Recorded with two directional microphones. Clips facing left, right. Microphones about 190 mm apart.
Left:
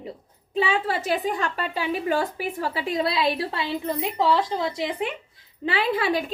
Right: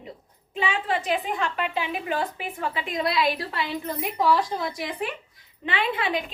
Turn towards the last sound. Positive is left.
turn(degrees=40)  # may be behind; listen again after turning